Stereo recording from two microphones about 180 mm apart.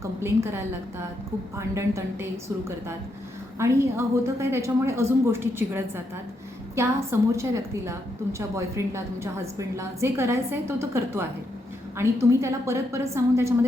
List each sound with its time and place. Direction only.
0.0 s a woman's voice: 15° right (ahead or behind)
3.6 s a woman's voice: 15° right (ahead or behind)